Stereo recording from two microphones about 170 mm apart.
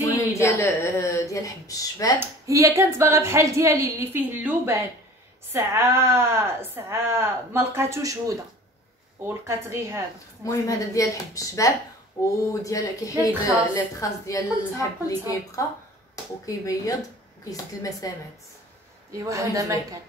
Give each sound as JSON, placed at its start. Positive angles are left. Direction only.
{"t": 0.3, "sound": "a woman's voice", "side_deg": 15}
{"t": 2.1, "sound": "a woman's voice", "side_deg": -15}
{"t": 10.4, "sound": "a woman's voice", "side_deg": 20}
{"t": 18.0, "sound": "a woman's voice", "side_deg": 20}
{"t": 19.1, "sound": "a woman's voice", "side_deg": -20}